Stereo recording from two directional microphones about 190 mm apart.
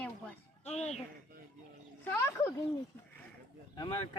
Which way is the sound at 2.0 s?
10° left (ahead or behind).